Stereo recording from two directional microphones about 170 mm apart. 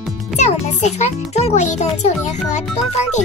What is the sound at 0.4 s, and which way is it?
A child's voice, 40° left (ahead or behind).